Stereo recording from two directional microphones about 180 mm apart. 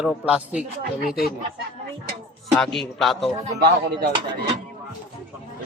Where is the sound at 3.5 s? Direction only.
60° right (ahead or behind).